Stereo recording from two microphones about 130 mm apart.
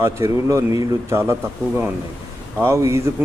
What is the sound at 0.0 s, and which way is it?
Speech, 20° right (ahead or behind).